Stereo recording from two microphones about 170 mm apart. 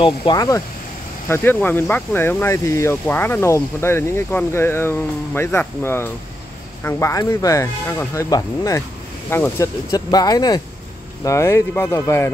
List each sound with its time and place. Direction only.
0.0 s speech: 30° left (ahead or behind)
1.3 s speech: 10° left (ahead or behind)